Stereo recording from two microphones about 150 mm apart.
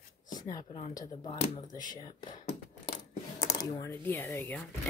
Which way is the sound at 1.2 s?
40° left (ahead or behind).